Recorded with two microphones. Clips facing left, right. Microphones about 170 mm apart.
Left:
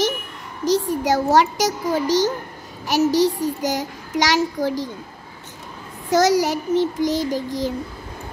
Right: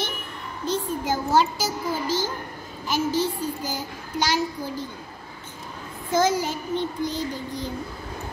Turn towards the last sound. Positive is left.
turn(degrees=90)